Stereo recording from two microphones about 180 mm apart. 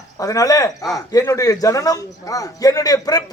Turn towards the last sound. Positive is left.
turn(degrees=20)  # may be behind; listen again after turning